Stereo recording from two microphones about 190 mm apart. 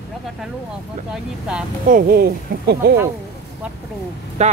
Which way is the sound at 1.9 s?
50° right (ahead or behind).